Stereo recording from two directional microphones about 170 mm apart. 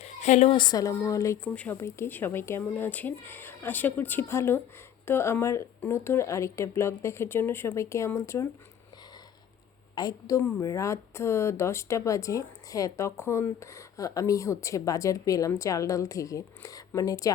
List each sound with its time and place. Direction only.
0.0 s a sound: 40° left (ahead or behind)
0.5 s speech: 25° left (ahead or behind)
9.9 s speech: 20° left (ahead or behind)